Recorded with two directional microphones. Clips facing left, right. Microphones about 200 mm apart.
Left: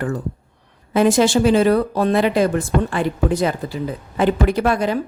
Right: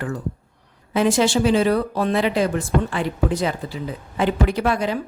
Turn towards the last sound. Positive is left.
turn(degrees=50)  # may be behind; listen again after turning